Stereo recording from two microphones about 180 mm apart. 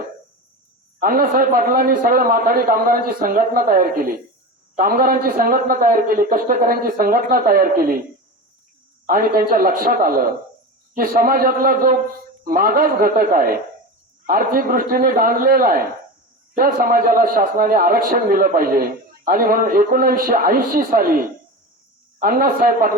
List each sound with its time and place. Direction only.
0.9 s a man's voice: 50° right (ahead or behind)
9.0 s a man's voice: 50° right (ahead or behind)